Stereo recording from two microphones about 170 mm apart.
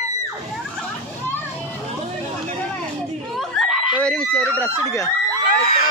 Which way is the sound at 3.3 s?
Centre (ahead or behind).